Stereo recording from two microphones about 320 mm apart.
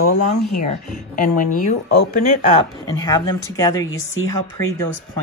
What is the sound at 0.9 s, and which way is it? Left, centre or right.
Speech, left.